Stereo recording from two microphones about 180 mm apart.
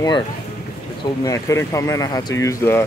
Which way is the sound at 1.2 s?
20° left (ahead or behind).